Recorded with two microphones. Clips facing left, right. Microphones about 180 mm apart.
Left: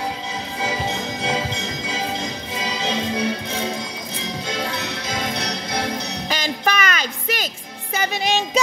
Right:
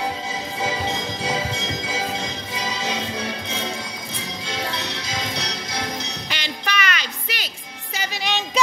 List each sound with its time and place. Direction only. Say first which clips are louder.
6.2 s music: left 7 dB; 45° left (ahead or behind)